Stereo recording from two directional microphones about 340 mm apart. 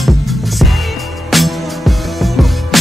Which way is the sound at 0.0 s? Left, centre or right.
Centre.